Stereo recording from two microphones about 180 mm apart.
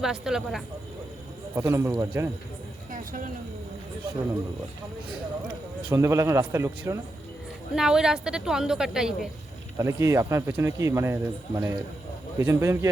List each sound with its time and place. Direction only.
0.0 s a woman's voice: 5° right (ahead or behind)
1.5 s speech: 15° right (ahead or behind)
2.9 s a sound: 50° right (ahead or behind)
5.9 s speech: 15° right (ahead or behind)
7.8 s a woman's voice: 5° right (ahead or behind)
9.7 s speech: 15° right (ahead or behind)